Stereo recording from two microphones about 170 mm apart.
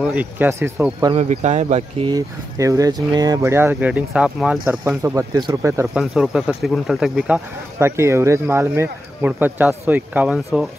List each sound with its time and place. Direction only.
0.0 s speech: 10° right (ahead or behind)
1.1 s speech: 40° right (ahead or behind)
2.1 s speech: 20° right (ahead or behind)
5.9 s speech: 5° right (ahead or behind)